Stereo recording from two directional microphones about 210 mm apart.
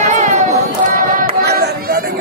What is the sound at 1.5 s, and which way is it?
Chatter, 50° right (ahead or behind).